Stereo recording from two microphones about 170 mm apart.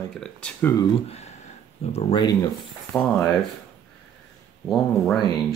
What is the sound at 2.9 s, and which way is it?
Speech, 5° left (ahead or behind).